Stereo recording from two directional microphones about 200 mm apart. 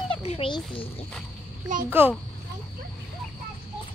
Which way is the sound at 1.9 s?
10° right (ahead or behind).